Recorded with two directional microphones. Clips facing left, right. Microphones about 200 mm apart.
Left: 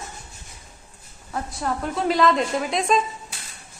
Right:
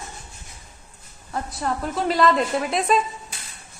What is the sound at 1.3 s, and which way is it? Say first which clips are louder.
A woman's voice: even; centre (ahead or behind).